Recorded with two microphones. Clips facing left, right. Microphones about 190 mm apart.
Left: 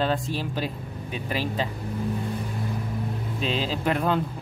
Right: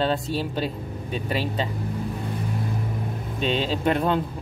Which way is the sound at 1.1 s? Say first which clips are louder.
Right 2 dB; 30° right (ahead or behind).